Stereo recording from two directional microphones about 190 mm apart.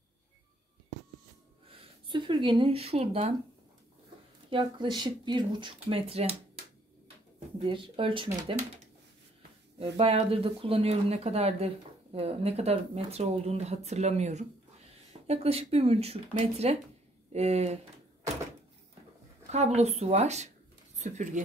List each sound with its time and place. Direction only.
1.7 s speech: 25° right (ahead or behind)
4.5 s speech: 25° right (ahead or behind)
9.8 s speech: 30° right (ahead or behind)
19.5 s speech: 35° right (ahead or behind)